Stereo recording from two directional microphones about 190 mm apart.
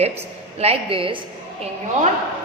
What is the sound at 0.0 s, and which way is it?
A woman's voice, 35° right (ahead or behind).